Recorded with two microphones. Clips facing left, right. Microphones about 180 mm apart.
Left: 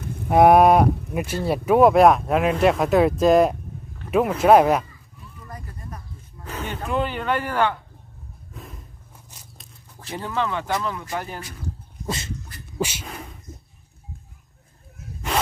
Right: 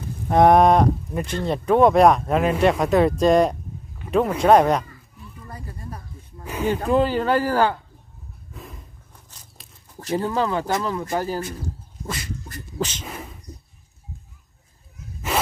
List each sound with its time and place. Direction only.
0.3 s cattle: 5° left (ahead or behind)
2.5 s speech: centre (ahead or behind)
4.4 s cattle: 5° left (ahead or behind)
5.5 s a sound: 30° right (ahead or behind)
6.4 s a sound: 10° right (ahead or behind)
6.7 s speech: 35° right (ahead or behind)
8.5 s a sound: centre (ahead or behind)
9.9 s speech: 40° right (ahead or behind)
12.7 s speech: 10° left (ahead or behind)
13.0 s speech: centre (ahead or behind)